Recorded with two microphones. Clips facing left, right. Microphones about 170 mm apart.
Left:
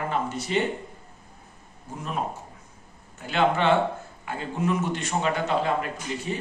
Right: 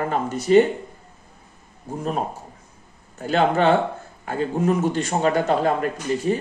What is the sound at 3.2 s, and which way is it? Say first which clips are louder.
A man's voice: right 4 dB; 40° right (ahead or behind).